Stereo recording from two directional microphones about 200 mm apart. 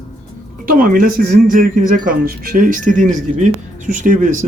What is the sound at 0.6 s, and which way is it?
Speech, 45° right (ahead or behind).